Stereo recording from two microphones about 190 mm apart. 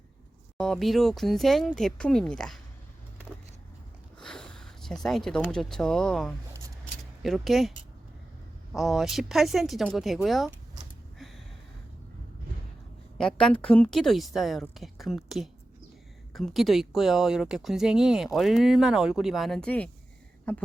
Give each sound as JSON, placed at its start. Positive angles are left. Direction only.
{"t": 0.5, "sound": "speech", "side_deg": 0}
{"t": 4.2, "sound": "speech", "side_deg": 5}
{"t": 8.7, "sound": "speech", "side_deg": 0}
{"t": 13.1, "sound": "speech", "side_deg": 5}